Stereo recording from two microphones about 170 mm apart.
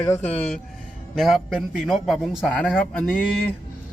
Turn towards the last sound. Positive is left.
turn(degrees=5)  # may be behind; listen again after turning